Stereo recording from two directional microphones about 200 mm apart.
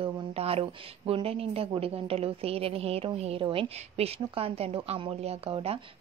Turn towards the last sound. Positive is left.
turn(degrees=-30)  # may be behind; listen again after turning